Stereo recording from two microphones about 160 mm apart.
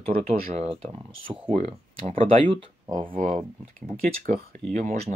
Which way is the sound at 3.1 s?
55° right (ahead or behind).